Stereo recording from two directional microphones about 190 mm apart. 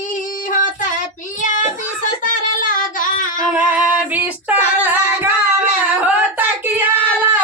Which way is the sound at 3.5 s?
10° right (ahead or behind).